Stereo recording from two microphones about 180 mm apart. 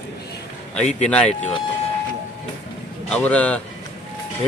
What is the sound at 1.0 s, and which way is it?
Speech, 5° left (ahead or behind).